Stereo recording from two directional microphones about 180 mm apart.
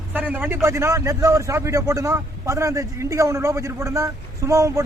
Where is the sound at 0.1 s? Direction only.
10° right (ahead or behind).